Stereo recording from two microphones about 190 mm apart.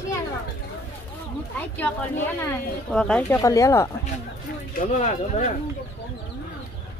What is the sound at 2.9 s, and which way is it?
Speech, 5° left (ahead or behind).